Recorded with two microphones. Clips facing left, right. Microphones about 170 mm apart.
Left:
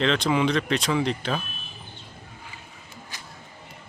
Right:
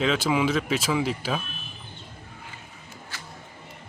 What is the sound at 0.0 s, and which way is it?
Speech, 5° right (ahead or behind).